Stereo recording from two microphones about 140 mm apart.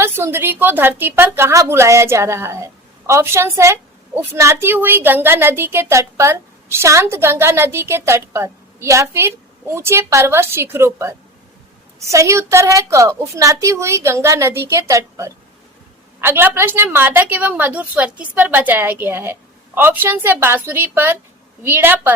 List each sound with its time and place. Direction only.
0.0 s a woman's voice: 15° right (ahead or behind)